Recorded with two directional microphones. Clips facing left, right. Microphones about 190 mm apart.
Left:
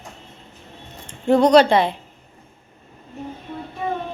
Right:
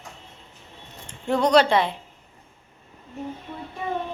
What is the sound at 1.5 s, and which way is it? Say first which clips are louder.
Speech: left 4 dB; 15° left (ahead or behind).